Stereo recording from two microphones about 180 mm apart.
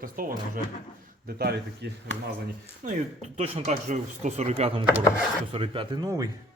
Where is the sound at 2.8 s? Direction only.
45° right (ahead or behind).